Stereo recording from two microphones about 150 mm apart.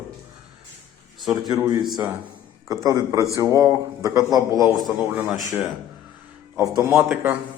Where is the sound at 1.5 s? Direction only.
25° right (ahead or behind).